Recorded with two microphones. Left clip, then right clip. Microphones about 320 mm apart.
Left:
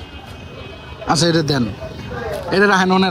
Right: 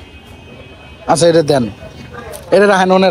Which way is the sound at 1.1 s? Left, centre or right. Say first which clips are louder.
Right 7 dB; centre.